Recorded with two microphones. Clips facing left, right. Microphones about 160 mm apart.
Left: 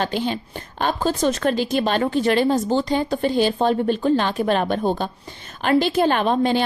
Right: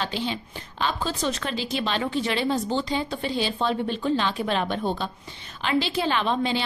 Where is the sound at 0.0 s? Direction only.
50° left (ahead or behind).